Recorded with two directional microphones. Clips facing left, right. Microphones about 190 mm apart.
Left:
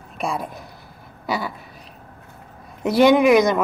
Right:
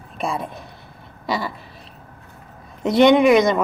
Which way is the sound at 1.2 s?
5° left (ahead or behind).